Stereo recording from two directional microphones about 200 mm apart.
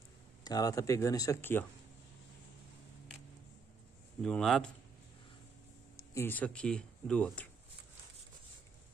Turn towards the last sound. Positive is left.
turn(degrees=5)  # may be behind; listen again after turning